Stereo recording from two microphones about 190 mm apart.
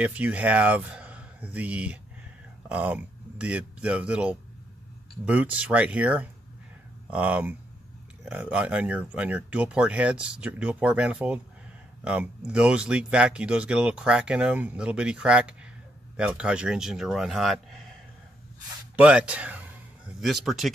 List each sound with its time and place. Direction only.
0.0 s speech: 10° right (ahead or behind)
18.9 s a man's voice: 5° right (ahead or behind)